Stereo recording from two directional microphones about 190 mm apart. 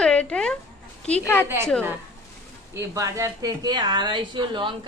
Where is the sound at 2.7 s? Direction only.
15° right (ahead or behind).